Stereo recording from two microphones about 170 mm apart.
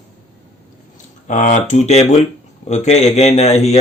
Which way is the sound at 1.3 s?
45° left (ahead or behind).